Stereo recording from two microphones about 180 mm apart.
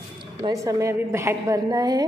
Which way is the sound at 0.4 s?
20° right (ahead or behind).